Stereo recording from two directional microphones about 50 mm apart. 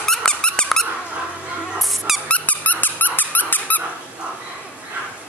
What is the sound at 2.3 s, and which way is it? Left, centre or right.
Squeak, left.